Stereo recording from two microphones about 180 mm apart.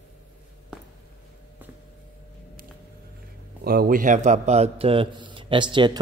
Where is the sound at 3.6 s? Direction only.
55° right (ahead or behind); by 5.9 s 25° right (ahead or behind).